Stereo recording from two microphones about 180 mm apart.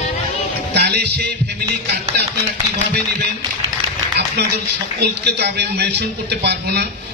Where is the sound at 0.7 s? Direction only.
70° right (ahead or behind).